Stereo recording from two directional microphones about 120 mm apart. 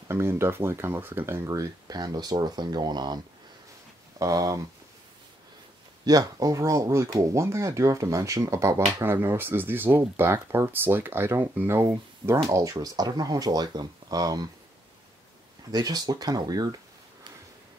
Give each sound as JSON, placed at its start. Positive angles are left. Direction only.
{"t": 0.1, "sound": "speech", "side_deg": -20}
{"t": 4.2, "sound": "speech", "side_deg": -25}
{"t": 6.0, "sound": "speech", "side_deg": -30}
{"t": 15.7, "sound": "speech", "side_deg": -35}